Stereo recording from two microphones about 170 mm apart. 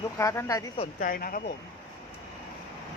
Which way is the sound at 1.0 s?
55° left (ahead or behind).